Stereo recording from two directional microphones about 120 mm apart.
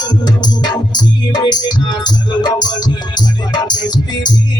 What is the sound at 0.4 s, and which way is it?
Music, 35° left (ahead or behind).